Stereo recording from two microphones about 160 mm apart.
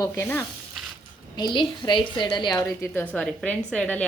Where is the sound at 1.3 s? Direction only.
30° left (ahead or behind).